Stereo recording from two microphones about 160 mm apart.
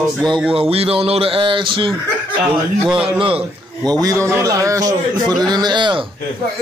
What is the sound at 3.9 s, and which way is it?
A man's voice, 20° right (ahead or behind).